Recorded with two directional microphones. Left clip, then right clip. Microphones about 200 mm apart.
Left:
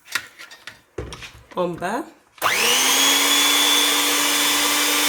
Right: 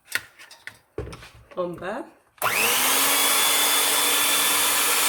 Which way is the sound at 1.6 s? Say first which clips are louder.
Left 5 dB; 55° left (ahead or behind).